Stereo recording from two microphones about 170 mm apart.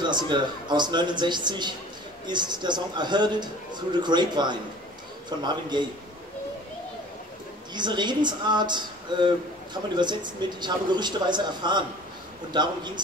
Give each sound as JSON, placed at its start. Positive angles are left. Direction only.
{"t": 0.0, "sound": "a man's voice", "side_deg": -25}
{"t": 7.7, "sound": "a man's voice", "side_deg": -25}